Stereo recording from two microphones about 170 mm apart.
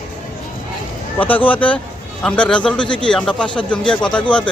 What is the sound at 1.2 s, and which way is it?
A man's voice, 10° left (ahead or behind).